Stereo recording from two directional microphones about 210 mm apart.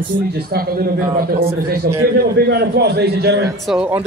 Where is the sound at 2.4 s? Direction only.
50° right (ahead or behind).